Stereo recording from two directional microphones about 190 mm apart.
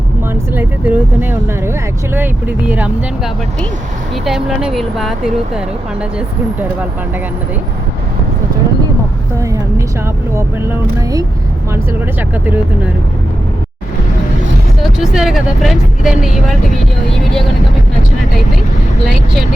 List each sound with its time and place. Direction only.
0.5 s speech: 10° right (ahead or behind)
4.3 s speech: centre (ahead or behind)
9.4 s a woman's voice: 15° right (ahead or behind)
14.8 s speech: centre (ahead or behind)